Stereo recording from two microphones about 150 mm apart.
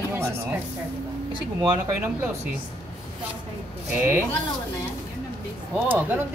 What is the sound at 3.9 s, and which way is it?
Speech, 15° right (ahead or behind).